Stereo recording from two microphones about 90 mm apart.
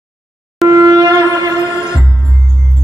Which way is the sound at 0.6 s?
45° right (ahead or behind).